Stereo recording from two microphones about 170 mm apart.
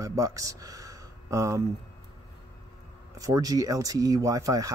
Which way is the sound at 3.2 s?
20° right (ahead or behind).